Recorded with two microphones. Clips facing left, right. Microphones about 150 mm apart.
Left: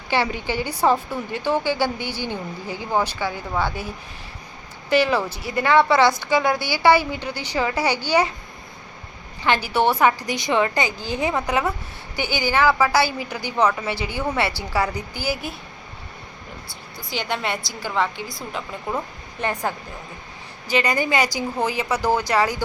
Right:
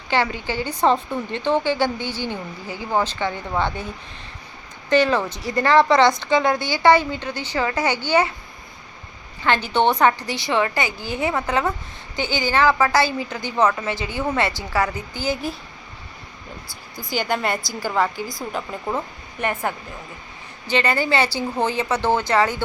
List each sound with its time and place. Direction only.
0.1 s a woman's voice: 15° left (ahead or behind)
4.9 s a woman's voice: 10° left (ahead or behind)
9.4 s a woman's voice: 10° left (ahead or behind)
12.2 s a woman's voice: 20° right (ahead or behind)
12.5 s a woman's voice: 10° left (ahead or behind)
17.0 s a woman's voice: centre (ahead or behind)
20.7 s a woman's voice: 15° left (ahead or behind)
21.6 s a woman's voice: 30° right (ahead or behind)
21.8 s a woman's voice: 10° left (ahead or behind)